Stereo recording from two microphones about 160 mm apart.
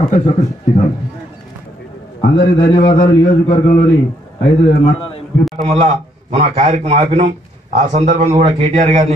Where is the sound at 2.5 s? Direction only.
30° left (ahead or behind).